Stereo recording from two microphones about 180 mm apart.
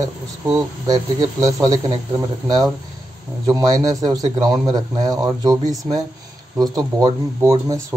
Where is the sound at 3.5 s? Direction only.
20° right (ahead or behind).